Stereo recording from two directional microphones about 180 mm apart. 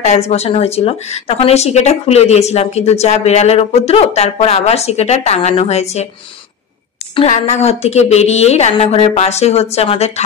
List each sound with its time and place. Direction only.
0.0 s speech: 35° left (ahead or behind)
7.2 s speech: 35° left (ahead or behind)